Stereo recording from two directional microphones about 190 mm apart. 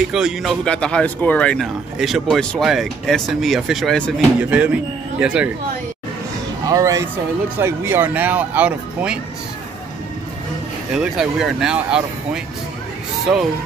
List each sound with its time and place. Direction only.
0.1 s speech: centre (ahead or behind)
6.6 s speech: 15° right (ahead or behind)
11.0 s speech: 5° right (ahead or behind)